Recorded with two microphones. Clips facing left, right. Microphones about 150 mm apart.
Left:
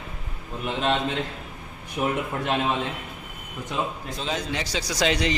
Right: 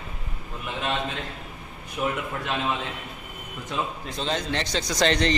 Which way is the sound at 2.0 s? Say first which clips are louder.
Left 2 dB; 25° left (ahead or behind).